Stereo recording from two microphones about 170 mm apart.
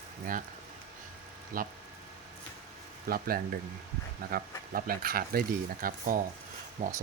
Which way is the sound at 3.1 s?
60° right (ahead or behind).